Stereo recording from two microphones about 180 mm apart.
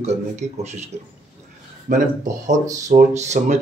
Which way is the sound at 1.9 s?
50° right (ahead or behind).